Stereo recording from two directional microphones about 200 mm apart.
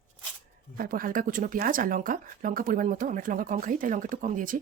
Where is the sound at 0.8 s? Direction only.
45° right (ahead or behind).